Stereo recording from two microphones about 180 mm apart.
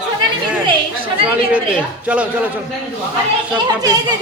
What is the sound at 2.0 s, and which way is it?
Speech, 10° right (ahead or behind).